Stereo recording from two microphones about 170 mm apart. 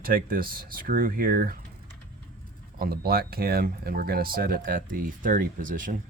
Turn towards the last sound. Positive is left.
turn(degrees=-50)  # may be behind; listen again after turning